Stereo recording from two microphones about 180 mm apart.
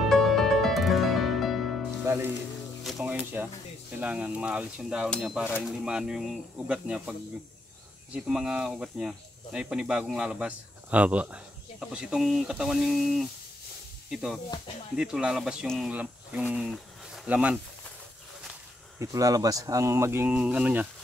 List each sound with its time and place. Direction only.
0.0 s music: centre (ahead or behind)
2.1 s music: 15° right (ahead or behind)
2.8 s music: centre (ahead or behind)
4.0 s speech: 10° right (ahead or behind)
18.9 s speech: 20° right (ahead or behind)